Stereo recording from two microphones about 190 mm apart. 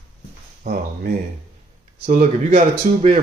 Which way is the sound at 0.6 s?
55° right (ahead or behind).